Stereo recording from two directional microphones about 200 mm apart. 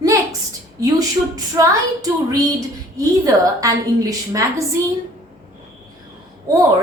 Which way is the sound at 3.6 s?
15° right (ahead or behind).